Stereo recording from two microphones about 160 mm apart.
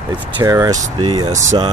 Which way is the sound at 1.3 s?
50° right (ahead or behind).